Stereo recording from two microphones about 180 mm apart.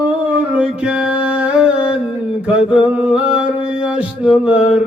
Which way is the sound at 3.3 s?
5° right (ahead or behind).